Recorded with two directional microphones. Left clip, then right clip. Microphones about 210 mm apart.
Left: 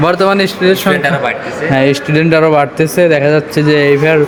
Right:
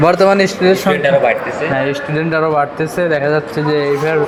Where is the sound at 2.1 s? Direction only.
50° left (ahead or behind).